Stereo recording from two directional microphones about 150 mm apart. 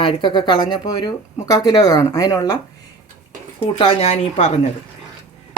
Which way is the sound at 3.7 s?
40° left (ahead or behind).